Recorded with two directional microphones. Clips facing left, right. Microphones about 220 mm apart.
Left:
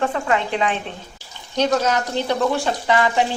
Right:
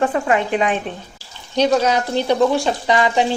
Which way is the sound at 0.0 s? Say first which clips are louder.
Right 3 dB; 15° right (ahead or behind).